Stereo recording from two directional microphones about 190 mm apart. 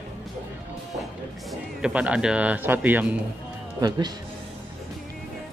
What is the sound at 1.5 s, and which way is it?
Speech, 5° right (ahead or behind).